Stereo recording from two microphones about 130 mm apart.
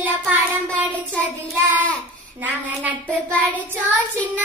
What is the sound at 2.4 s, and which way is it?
Speech, 10° right (ahead or behind).